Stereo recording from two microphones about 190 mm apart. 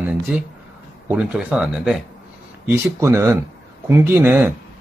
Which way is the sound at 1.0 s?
5° right (ahead or behind).